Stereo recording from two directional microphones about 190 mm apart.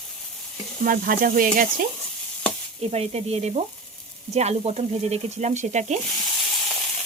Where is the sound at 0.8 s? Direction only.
45° right (ahead or behind).